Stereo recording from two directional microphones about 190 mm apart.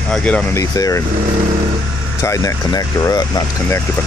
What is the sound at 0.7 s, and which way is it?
Speech, 15° left (ahead or behind).